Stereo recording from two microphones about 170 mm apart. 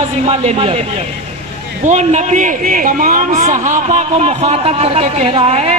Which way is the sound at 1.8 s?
45° right (ahead or behind).